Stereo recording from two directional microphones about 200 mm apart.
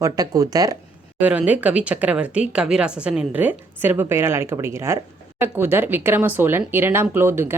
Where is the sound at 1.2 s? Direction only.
5° right (ahead or behind).